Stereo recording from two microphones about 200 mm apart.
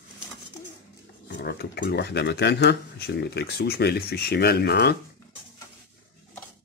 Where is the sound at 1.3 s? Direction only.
55° left (ahead or behind).